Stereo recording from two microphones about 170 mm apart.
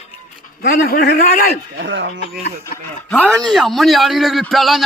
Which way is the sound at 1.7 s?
90° right.